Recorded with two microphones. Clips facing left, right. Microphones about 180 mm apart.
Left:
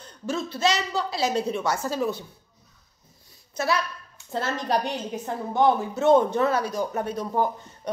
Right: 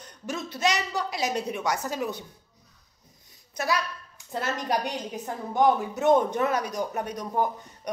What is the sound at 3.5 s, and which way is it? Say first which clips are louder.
Speech: left 2 dB; 15° right (ahead or behind).